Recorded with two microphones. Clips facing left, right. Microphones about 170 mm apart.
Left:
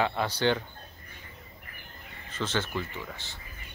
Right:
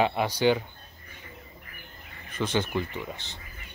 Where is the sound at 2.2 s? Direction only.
15° right (ahead or behind).